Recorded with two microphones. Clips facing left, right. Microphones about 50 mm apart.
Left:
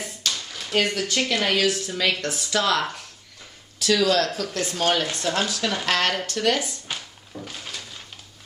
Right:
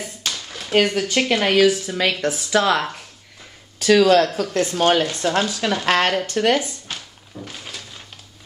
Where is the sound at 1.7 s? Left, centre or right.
Centre.